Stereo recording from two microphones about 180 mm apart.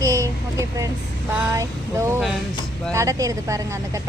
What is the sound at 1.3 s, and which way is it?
Speech, 10° right (ahead or behind).